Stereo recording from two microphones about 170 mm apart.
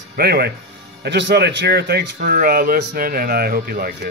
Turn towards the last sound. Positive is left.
turn(degrees=-60)  # may be behind; listen again after turning